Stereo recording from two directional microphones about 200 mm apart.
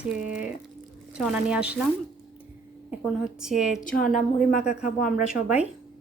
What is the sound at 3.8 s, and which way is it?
Speech, 45° left (ahead or behind).